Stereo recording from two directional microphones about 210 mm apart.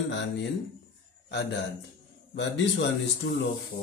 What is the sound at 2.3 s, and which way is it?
Speech, 55° left (ahead or behind).